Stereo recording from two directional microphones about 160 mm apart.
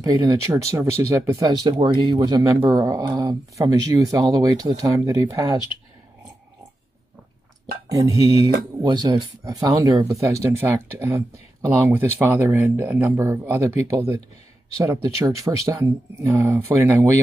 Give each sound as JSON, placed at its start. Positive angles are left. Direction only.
{"t": 0.0, "sound": "speech", "side_deg": -20}
{"t": 7.9, "sound": "speech", "side_deg": -20}